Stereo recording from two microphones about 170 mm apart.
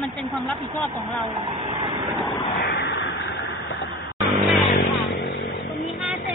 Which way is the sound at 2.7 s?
75° left (ahead or behind).